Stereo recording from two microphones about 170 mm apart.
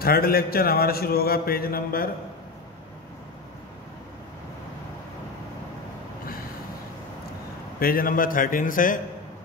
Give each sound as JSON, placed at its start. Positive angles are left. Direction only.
{"t": 0.0, "sound": "mantra", "side_deg": 65}
{"t": 7.8, "sound": "a man's voice", "side_deg": 60}